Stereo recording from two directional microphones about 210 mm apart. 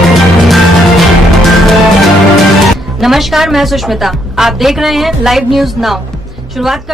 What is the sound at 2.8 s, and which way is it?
A woman's voice, centre (ahead or behind).